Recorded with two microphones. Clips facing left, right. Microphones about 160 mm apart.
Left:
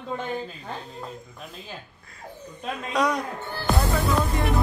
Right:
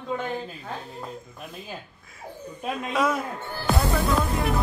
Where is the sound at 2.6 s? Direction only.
5° right (ahead or behind).